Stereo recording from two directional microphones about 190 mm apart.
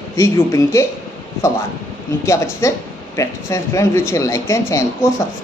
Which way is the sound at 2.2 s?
15° left (ahead or behind).